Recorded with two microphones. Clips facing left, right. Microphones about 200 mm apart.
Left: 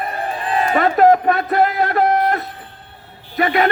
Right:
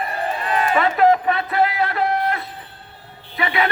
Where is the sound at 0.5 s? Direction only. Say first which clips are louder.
Left 3 dB; 40° left (ahead or behind).